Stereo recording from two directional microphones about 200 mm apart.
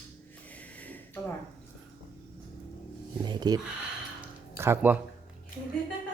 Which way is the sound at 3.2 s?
20° right (ahead or behind).